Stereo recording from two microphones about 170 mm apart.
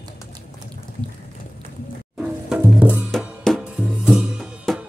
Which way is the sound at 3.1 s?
Centre (ahead or behind).